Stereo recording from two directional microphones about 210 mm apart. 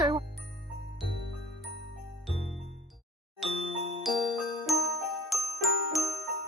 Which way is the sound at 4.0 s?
Centre (ahead or behind).